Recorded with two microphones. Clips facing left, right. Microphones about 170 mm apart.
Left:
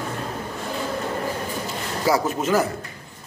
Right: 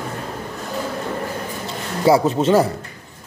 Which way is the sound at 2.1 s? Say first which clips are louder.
Right 6 dB; 25° right (ahead or behind).